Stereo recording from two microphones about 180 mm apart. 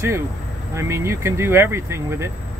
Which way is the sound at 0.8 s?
15° right (ahead or behind).